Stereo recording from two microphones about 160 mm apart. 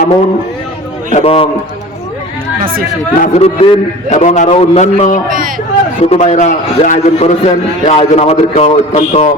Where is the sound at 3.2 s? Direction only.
40° left (ahead or behind).